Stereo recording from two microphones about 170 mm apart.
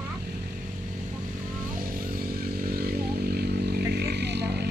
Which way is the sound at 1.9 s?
60° right (ahead or behind).